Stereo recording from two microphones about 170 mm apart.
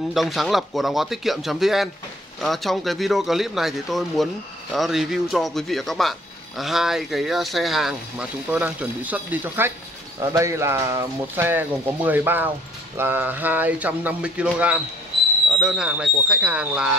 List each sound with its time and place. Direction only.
0.1 s speech: centre (ahead or behind)